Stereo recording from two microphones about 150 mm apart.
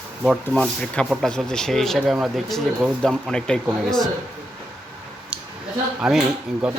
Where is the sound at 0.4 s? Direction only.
5° left (ahead or behind).